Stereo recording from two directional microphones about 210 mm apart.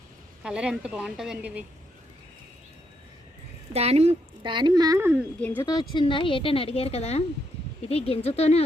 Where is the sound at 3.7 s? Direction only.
30° right (ahead or behind); by 5.2 s 10° right (ahead or behind).